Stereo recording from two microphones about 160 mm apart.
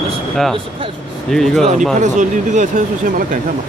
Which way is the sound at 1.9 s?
50° right (ahead or behind).